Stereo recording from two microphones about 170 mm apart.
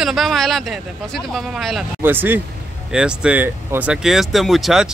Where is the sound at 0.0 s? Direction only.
Centre (ahead or behind).